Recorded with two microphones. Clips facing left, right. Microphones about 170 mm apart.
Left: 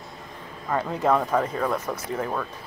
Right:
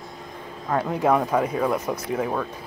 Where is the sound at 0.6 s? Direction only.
10° right (ahead or behind).